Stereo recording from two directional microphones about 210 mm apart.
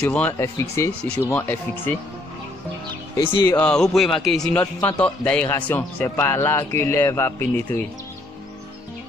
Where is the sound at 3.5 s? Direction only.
5° left (ahead or behind).